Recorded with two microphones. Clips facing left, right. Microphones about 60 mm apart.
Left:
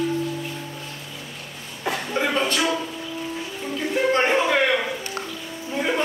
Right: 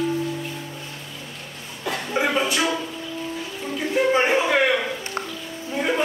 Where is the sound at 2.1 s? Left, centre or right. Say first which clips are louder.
Right 1 dB; centre.